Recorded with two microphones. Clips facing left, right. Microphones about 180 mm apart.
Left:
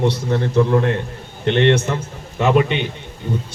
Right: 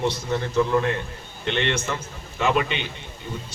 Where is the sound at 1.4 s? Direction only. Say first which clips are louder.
Left 10 dB; 55° left (ahead or behind).